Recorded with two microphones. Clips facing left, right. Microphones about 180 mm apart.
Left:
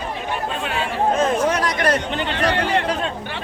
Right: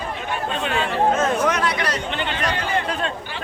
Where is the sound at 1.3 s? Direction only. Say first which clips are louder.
Left 1 dB; 30° left (ahead or behind); by 2.8 s 70° left (ahead or behind).